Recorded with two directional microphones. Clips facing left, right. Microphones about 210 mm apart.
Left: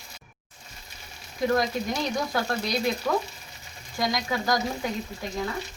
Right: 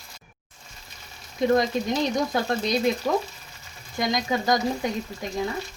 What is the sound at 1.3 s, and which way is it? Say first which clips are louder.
Speech: right 3 dB; 20° right (ahead or behind).